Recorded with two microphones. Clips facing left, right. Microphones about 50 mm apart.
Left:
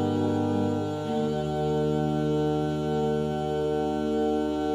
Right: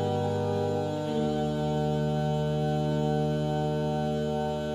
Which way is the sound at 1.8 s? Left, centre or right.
Centre.